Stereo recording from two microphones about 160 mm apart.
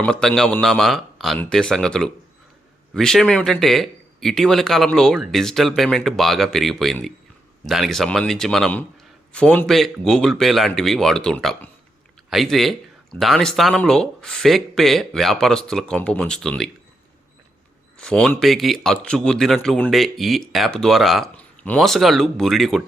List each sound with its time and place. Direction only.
0.0 s speech: 5° left (ahead or behind)
17.9 s speech: 5° left (ahead or behind)